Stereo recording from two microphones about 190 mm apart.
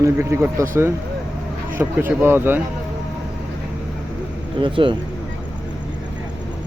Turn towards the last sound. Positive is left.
turn(degrees=-25)  # may be behind; listen again after turning